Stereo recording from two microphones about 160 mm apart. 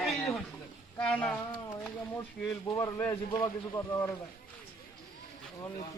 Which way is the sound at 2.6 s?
20° left (ahead or behind).